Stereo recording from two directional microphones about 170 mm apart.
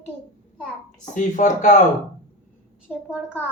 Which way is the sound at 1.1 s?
50° left (ahead or behind).